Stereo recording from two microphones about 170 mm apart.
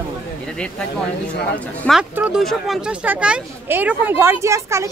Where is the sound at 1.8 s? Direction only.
5° right (ahead or behind).